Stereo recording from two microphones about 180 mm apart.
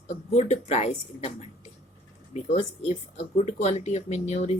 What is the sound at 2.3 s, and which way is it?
Speech, 40° left (ahead or behind).